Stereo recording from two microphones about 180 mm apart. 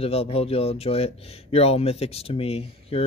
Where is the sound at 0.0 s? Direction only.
35° left (ahead or behind).